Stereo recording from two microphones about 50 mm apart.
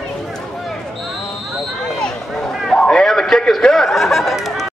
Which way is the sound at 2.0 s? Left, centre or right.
Centre.